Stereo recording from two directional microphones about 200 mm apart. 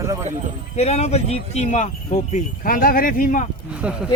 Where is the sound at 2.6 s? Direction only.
45° left (ahead or behind).